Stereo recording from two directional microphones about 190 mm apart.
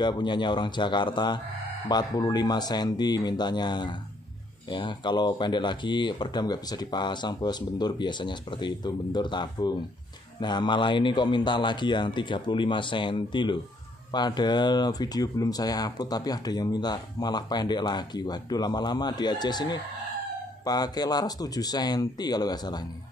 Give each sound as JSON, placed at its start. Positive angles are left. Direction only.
{"t": 0.0, "sound": "speech", "side_deg": 25}